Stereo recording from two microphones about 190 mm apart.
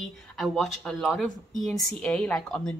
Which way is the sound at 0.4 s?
Centre (ahead or behind).